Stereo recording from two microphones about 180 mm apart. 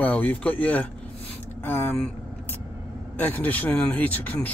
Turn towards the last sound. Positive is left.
turn(degrees=10)  # may be behind; listen again after turning